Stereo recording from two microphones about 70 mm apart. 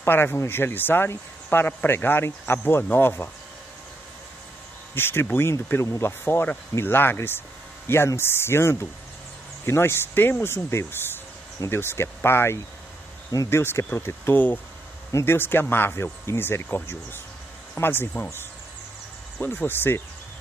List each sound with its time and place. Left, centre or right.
0.0 s speech: left
4.9 s speech: left
14.3 s speech: left
19.4 s speech: left